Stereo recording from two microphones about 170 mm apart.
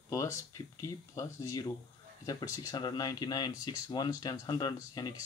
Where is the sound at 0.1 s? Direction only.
20° left (ahead or behind).